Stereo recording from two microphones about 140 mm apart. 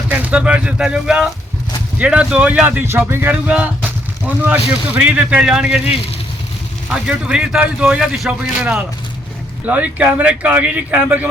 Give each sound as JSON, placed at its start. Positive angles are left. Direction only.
{"t": 0.1, "sound": "speech", "side_deg": -10}